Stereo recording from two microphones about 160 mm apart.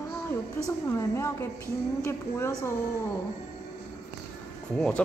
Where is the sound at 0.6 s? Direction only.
15° left (ahead or behind).